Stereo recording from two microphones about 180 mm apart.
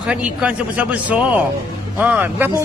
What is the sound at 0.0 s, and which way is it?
A man's voice, 5° right (ahead or behind).